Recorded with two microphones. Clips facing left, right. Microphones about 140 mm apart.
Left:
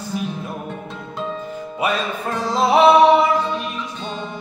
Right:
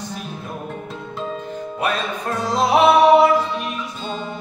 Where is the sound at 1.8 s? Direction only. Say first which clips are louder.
Left 2 dB; 5° left (ahead or behind).